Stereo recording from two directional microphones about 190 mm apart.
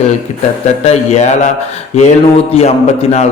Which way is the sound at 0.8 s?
35° left (ahead or behind).